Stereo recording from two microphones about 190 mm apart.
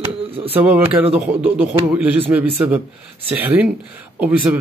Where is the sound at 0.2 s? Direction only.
30° right (ahead or behind).